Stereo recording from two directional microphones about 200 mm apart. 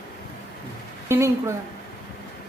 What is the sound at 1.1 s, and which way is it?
Speech, 15° right (ahead or behind).